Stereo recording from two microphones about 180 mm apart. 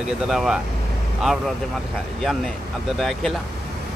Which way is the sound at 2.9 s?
Centre (ahead or behind).